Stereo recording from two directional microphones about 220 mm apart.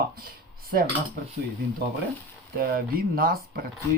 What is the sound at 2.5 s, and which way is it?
Speech, 40° right (ahead or behind).